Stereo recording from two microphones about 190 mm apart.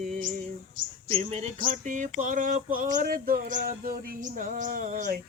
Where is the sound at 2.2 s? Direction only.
45° right (ahead or behind).